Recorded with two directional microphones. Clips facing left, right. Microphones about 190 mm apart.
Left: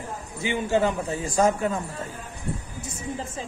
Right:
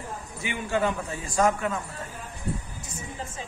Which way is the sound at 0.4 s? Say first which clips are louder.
Left 4 dB; 25° left (ahead or behind).